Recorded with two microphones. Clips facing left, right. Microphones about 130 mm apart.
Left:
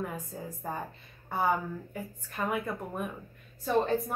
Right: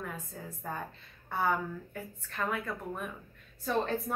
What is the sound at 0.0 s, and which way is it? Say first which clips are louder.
Speech: left 4 dB; 25° left (ahead or behind).